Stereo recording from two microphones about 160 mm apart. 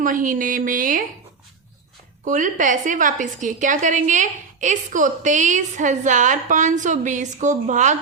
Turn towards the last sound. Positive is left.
turn(degrees=-50)  # may be behind; listen again after turning